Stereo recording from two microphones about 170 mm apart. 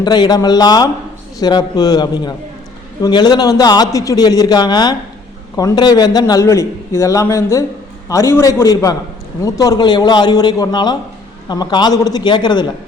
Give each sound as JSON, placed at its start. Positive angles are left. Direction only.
{"t": 0.0, "sound": "a man's voice", "side_deg": 25}